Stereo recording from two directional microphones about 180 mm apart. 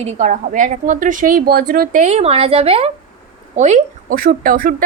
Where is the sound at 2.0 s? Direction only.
35° right (ahead or behind).